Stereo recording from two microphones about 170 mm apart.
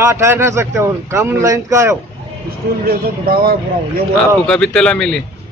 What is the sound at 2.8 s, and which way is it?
Speech, 60° right (ahead or behind).